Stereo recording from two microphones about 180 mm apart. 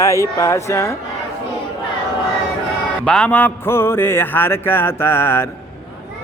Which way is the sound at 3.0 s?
5° left (ahead or behind).